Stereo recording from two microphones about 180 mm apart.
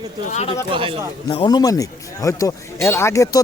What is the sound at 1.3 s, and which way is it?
Speech, 25° left (ahead or behind).